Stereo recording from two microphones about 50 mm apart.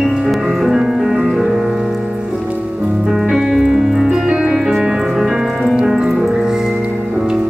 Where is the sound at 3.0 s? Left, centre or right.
Centre.